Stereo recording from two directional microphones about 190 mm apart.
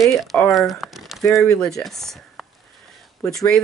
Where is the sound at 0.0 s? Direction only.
Centre (ahead or behind).